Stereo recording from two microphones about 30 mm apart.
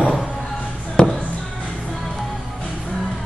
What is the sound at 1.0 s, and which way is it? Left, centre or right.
Music, left.